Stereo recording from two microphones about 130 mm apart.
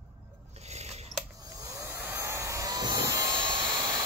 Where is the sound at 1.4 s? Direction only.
25° right (ahead or behind).